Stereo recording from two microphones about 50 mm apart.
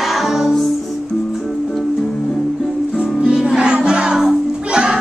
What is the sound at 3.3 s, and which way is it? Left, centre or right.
Music, centre.